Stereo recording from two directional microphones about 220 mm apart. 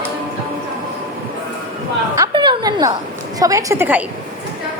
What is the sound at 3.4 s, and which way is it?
Speech, 15° right (ahead or behind).